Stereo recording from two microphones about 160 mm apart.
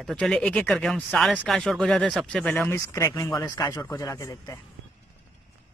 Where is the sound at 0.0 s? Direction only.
5° left (ahead or behind); by 4.6 s 20° left (ahead or behind).